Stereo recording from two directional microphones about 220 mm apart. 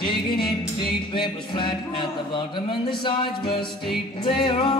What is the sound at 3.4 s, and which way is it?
Music, 45° left (ahead or behind).